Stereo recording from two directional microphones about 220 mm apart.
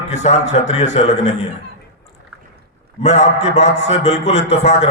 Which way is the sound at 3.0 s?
30° left (ahead or behind).